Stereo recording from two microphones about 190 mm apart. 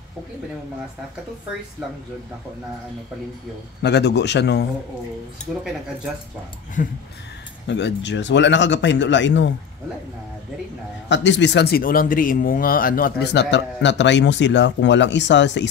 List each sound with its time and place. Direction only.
3.8 s a man's voice: 65° left (ahead or behind)
6.8 s speech: 45° left (ahead or behind)
7.6 s a man's voice: 65° left (ahead or behind)
11.1 s a man's voice: 70° left (ahead or behind)